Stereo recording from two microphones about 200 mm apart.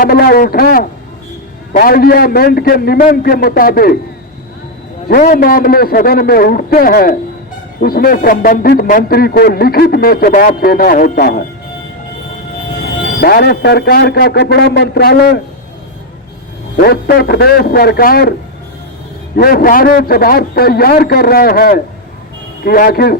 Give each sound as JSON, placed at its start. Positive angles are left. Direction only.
{"t": 0.0, "sound": "a man's voice", "side_deg": 50}
{"t": 5.0, "sound": "a man's voice", "side_deg": 45}
{"t": 13.1, "sound": "a man's voice", "side_deg": 50}
{"t": 16.7, "sound": "a man's voice", "side_deg": 50}
{"t": 19.4, "sound": "a man's voice", "side_deg": 50}